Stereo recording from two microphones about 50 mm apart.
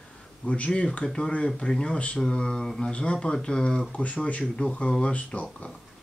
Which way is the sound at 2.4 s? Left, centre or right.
Centre.